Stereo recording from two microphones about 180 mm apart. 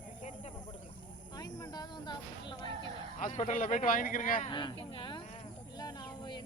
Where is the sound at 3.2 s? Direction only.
40° left (ahead or behind).